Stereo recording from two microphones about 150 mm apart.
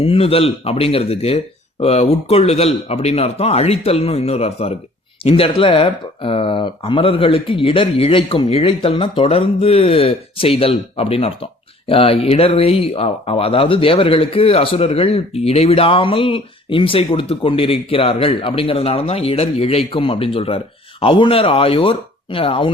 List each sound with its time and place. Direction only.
0.0 s speech: 40° left (ahead or behind)